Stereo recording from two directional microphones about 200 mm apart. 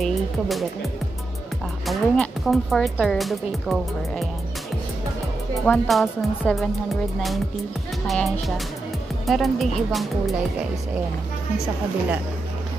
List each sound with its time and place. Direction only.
0.0 s speech: centre (ahead or behind)
1.9 s a woman's voice: centre (ahead or behind)
5.7 s a woman's voice: 5° left (ahead or behind)
8.1 s a woman's voice: centre (ahead or behind)